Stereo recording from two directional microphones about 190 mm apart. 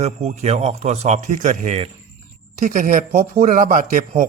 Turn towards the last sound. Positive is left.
turn(degrees=-40)  # may be behind; listen again after turning